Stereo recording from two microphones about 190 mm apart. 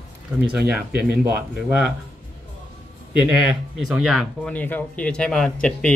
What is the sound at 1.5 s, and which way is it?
Speech, 5° right (ahead or behind).